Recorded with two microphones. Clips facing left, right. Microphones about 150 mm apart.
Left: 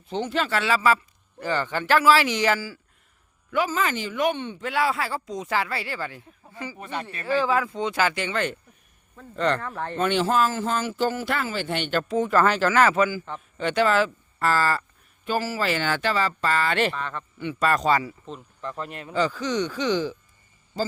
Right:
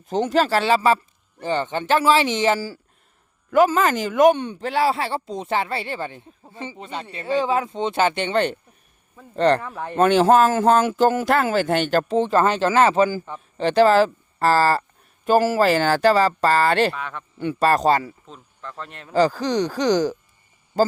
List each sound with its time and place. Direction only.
0.1 s speech: 40° right (ahead or behind)
3.7 s speech: 45° right (ahead or behind)
4.7 s speech: 30° right (ahead or behind)
9.6 s speech: 10° right (ahead or behind)
9.9 s speech: 45° right (ahead or behind)
16.9 s speech: 10° right (ahead or behind)
17.6 s speech: 35° right (ahead or behind)
18.3 s speech: 5° left (ahead or behind)
19.1 s speech: 35° right (ahead or behind)